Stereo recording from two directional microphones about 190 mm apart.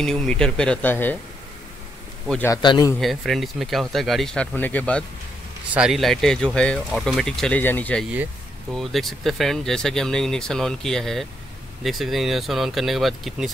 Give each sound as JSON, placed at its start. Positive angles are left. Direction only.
{"t": 0.0, "sound": "speech", "side_deg": 5}
{"t": 2.2, "sound": "a man's voice", "side_deg": 5}
{"t": 2.5, "sound": "a man's voice", "side_deg": 20}
{"t": 3.0, "sound": "speech", "side_deg": 0}